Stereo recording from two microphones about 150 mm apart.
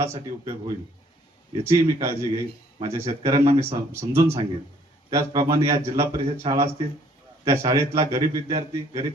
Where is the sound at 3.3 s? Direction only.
50° right (ahead or behind).